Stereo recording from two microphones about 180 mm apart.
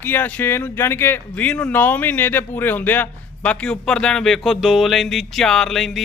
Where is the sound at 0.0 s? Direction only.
10° left (ahead or behind).